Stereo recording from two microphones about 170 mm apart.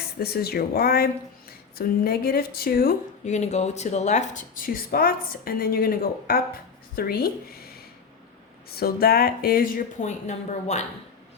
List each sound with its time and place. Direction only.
0.2 s a woman's voice: 65° left (ahead or behind)
3.2 s a woman's voice: 40° left (ahead or behind); by 7.7 s 65° left (ahead or behind)
8.7 s a woman's voice: 65° left (ahead or behind); by 10.8 s 40° left (ahead or behind)